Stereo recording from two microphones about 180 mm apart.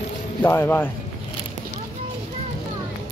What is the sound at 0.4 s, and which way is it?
Speech, 10° left (ahead or behind).